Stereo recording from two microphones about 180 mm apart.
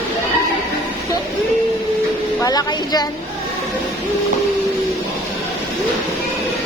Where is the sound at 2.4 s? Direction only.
20° left (ahead or behind).